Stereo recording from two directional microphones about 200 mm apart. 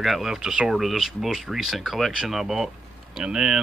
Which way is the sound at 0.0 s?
Centre (ahead or behind).